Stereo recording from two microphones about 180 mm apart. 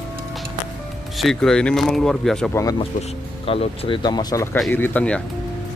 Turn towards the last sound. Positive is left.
turn(degrees=5)  # may be behind; listen again after turning